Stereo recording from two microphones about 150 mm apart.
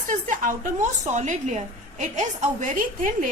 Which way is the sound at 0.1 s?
60° right (ahead or behind).